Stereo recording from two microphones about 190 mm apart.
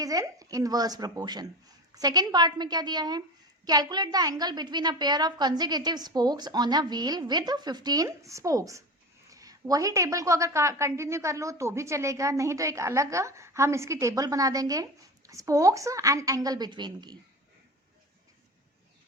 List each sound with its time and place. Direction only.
0.0 s a woman's voice: 20° right (ahead or behind)